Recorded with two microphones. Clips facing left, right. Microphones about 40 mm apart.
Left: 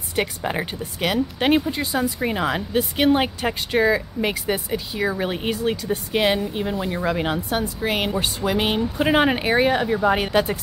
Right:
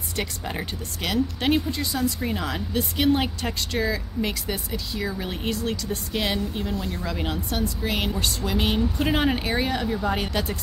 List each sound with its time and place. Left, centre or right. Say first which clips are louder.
0.1 s speech: left 6 dB; left